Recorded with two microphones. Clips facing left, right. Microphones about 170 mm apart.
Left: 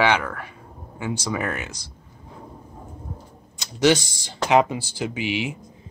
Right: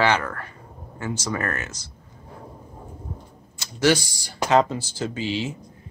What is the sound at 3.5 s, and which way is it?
Speech, 20° left (ahead or behind).